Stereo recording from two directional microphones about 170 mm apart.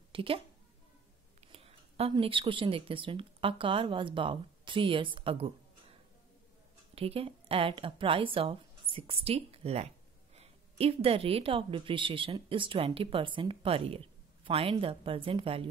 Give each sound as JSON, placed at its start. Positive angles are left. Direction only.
{"t": 0.1, "sound": "a woman's voice", "side_deg": -30}
{"t": 1.5, "sound": "speech", "side_deg": -35}
{"t": 7.0, "sound": "a woman's voice", "side_deg": -35}